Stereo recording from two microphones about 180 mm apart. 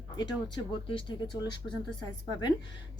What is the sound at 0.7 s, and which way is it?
Speech, 30° left (ahead or behind).